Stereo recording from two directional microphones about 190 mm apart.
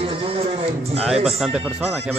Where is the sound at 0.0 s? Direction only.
30° right (ahead or behind).